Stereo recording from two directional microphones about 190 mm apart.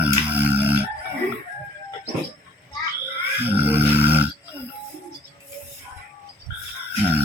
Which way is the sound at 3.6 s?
10° right (ahead or behind).